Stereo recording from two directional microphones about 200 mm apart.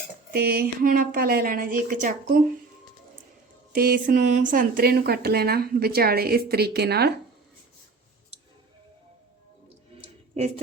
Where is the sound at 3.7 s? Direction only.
45° right (ahead or behind).